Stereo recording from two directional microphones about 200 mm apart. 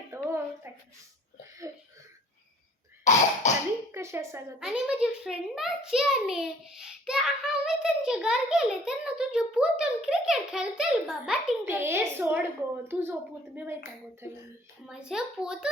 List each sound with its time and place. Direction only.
0.3 s a sound: 10° right (ahead or behind)
3.0 s cough: 35° left (ahead or behind)
3.9 s a child's voice: 15° right (ahead or behind)
14.8 s a child's voice: 5° right (ahead or behind)